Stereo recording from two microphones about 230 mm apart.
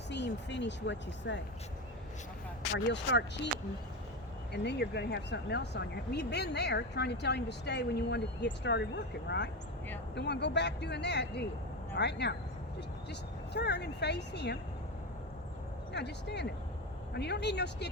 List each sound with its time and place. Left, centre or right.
0.1 s speech: left
2.7 s speech: left
4.5 s speech: left
15.9 s speech: left